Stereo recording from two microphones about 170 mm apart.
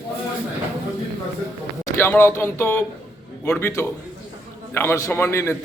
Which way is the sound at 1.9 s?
10° left (ahead or behind).